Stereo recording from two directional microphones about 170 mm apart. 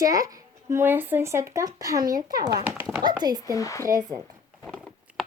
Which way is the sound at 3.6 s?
20° left (ahead or behind).